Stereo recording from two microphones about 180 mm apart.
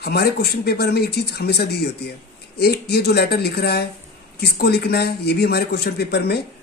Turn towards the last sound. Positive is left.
turn(degrees=65)  # may be behind; listen again after turning